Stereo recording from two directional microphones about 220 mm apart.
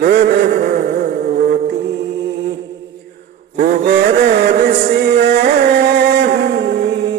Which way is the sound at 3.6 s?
40° right (ahead or behind).